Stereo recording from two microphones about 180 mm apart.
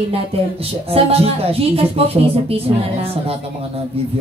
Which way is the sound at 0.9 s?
35° right (ahead or behind).